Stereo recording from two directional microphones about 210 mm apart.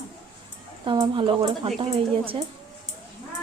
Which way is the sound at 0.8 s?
25° right (ahead or behind).